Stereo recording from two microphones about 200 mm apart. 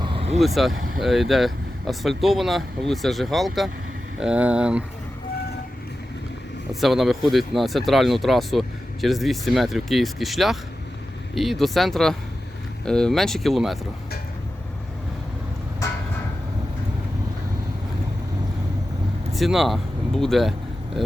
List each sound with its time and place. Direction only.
0.0 s vehicle: 25° right (ahead or behind)
0.3 s speech: centre (ahead or behind)
6.7 s speech: centre (ahead or behind)
19.3 s speech: centre (ahead or behind)